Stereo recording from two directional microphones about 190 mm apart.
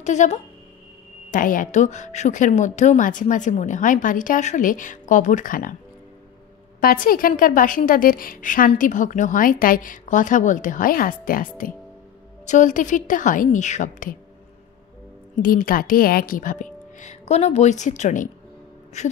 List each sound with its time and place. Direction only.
0.0 s a woman's voice: 40° left (ahead or behind)
6.8 s a woman's voice: 50° left (ahead or behind)
15.4 s a woman's voice: 50° left (ahead or behind)